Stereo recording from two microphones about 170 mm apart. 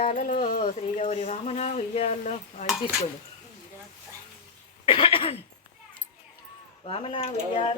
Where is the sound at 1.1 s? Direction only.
40° left (ahead or behind).